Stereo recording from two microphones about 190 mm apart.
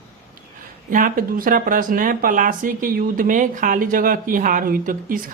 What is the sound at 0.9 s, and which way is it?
Speech, 45° right (ahead or behind).